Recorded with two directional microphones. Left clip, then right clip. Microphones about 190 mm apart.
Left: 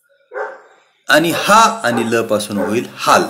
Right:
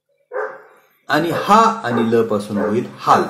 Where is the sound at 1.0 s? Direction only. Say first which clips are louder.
Left 4 dB; 30° left (ahead or behind).